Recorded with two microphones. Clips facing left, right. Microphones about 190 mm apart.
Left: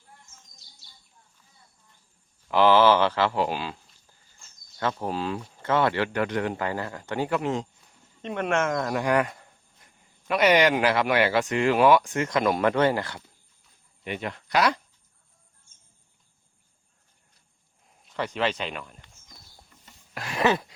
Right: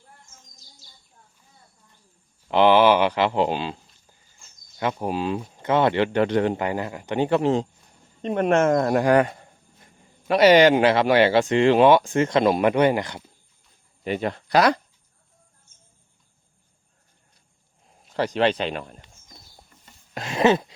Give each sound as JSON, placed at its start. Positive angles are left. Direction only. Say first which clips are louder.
{"t": 2.5, "sound": "speech", "louder": "right 2 dB", "side_deg": -20}
{"t": 4.8, "sound": "speech", "louder": "right 3 dB", "side_deg": -15}
{"t": 7.3, "sound": "speech", "louder": "right 8 dB", "side_deg": -30}
{"t": 9.1, "sound": "speech", "louder": "right 5 dB", "side_deg": -30}
{"t": 14.0, "sound": "speech", "louder": "right 7 dB", "side_deg": -35}
{"t": 18.3, "sound": "speech", "louder": "right 6 dB", "side_deg": -35}
{"t": 20.1, "sound": "a sound", "louder": "right 5 dB", "side_deg": -25}